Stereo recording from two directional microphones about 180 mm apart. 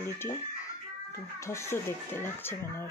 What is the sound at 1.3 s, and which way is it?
Speech, 15° left (ahead or behind).